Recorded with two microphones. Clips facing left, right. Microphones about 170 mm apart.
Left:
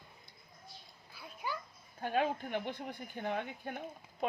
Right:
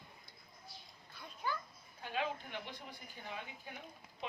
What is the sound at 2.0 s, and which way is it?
Speech, 50° left (ahead or behind).